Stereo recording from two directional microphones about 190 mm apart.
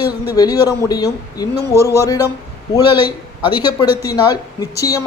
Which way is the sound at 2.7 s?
20° left (ahead or behind).